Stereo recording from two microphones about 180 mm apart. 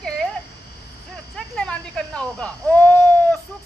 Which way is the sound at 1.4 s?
5° left (ahead or behind).